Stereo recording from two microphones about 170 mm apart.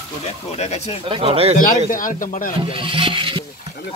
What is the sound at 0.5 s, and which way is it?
Speech, 40° left (ahead or behind).